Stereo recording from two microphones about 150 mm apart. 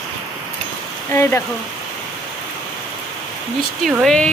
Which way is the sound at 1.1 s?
15° left (ahead or behind).